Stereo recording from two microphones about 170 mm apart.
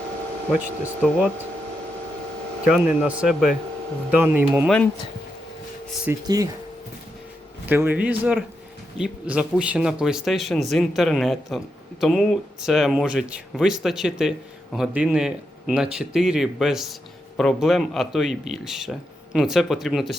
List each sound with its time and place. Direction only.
0.5 s speech: 5° right (ahead or behind)
2.6 s speech: 5° right (ahead or behind)
6.1 s speech: 20° right (ahead or behind)
7.7 s speech: 10° right (ahead or behind)